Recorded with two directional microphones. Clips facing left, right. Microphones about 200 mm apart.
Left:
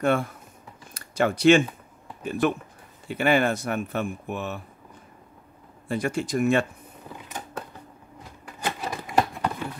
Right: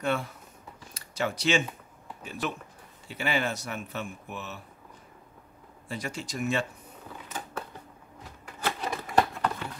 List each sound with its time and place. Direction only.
0.0 s speech: 50° left (ahead or behind)
5.9 s speech: 55° left (ahead or behind)
7.2 s a sound: 15° left (ahead or behind)